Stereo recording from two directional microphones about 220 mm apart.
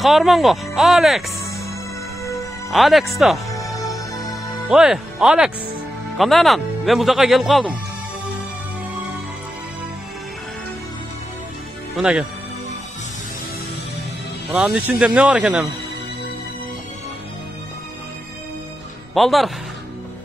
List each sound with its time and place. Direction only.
0.0 s speech: centre (ahead or behind)
2.7 s speech: centre (ahead or behind)
3.5 s music: 15° left (ahead or behind)
4.6 s speech: 5° right (ahead or behind)
12.0 s speech: 5° right (ahead or behind)
14.5 s speech: 5° right (ahead or behind)
19.1 s speech: centre (ahead or behind)